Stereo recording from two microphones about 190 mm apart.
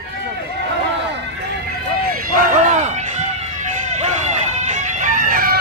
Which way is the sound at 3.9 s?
35° right (ahead or behind).